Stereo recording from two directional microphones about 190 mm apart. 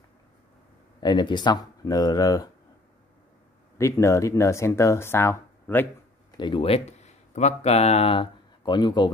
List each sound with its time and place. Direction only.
1.0 s speech: 25° left (ahead or behind)
3.7 s speech: 15° left (ahead or behind)
6.3 s speech: 25° left (ahead or behind)